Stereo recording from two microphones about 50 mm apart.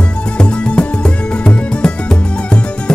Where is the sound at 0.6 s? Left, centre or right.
Left.